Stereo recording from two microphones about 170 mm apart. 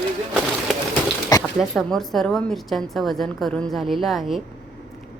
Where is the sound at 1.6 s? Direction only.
Centre (ahead or behind).